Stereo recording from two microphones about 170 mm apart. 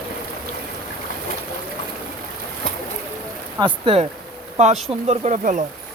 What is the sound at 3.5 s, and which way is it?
Speech, 30° right (ahead or behind).